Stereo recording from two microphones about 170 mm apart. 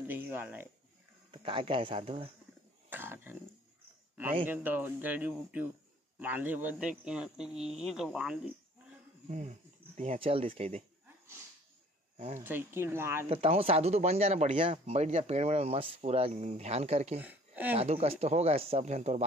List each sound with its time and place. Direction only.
0.0 s speech: 10° right (ahead or behind)
1.3 s speech: 30° right (ahead or behind)
2.9 s wild animals: 10° right (ahead or behind)
4.5 s speech: 10° right (ahead or behind)
9.9 s speech: 35° right (ahead or behind)
12.4 s speech: 15° right (ahead or behind)
13.3 s speech: 35° right (ahead or behind)
17.2 s speech: 10° right (ahead or behind)
17.7 s speech: 35° right (ahead or behind)